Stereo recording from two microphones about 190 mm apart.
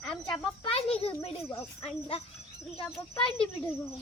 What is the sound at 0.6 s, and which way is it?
A child's voice, 30° left (ahead or behind).